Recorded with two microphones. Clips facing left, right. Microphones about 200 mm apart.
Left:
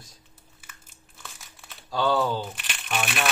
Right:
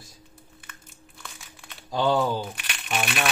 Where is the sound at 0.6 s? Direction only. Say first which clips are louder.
Right 5 dB; 5° left (ahead or behind).